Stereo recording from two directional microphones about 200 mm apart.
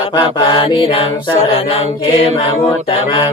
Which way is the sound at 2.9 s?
25° left (ahead or behind).